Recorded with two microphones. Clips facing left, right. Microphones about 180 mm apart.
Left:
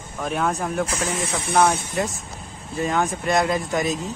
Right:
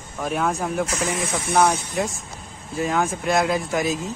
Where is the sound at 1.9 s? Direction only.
Centre (ahead or behind).